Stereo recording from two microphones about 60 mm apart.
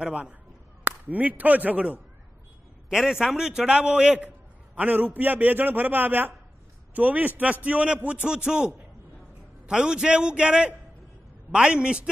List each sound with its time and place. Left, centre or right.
0.0 s a man's voice: right
2.9 s a man's voice: centre
4.7 s a man's voice: right